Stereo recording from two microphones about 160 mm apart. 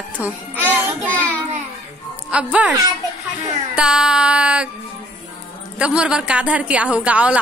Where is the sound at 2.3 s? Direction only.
5° right (ahead or behind).